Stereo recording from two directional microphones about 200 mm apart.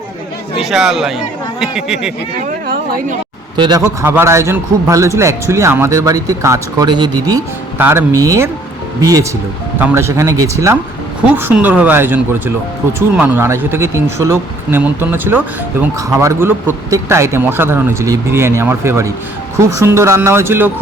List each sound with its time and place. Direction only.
0.6 s speech: centre (ahead or behind)
2.6 s a sound: 45° right (ahead or behind)
3.6 s a man's voice: 20° right (ahead or behind)